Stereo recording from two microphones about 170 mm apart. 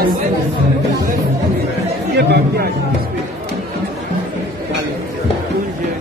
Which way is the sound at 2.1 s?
70° right (ahead or behind).